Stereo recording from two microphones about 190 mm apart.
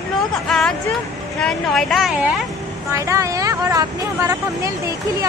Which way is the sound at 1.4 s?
Centre (ahead or behind).